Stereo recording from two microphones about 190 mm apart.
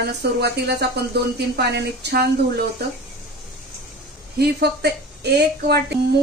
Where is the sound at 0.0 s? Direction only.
55° right (ahead or behind).